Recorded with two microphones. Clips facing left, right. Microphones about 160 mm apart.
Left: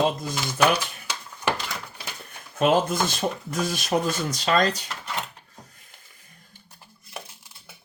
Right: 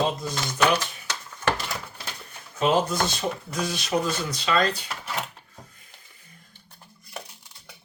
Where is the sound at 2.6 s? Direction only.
50° left (ahead or behind).